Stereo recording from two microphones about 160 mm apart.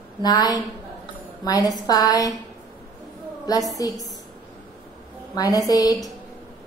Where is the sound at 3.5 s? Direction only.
25° left (ahead or behind).